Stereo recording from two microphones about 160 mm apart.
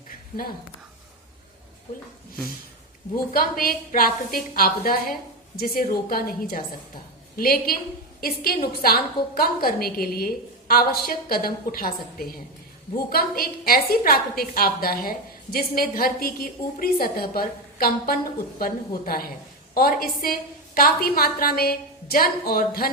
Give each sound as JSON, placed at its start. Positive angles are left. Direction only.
{"t": 3.3, "sound": "a woman's voice", "side_deg": 65}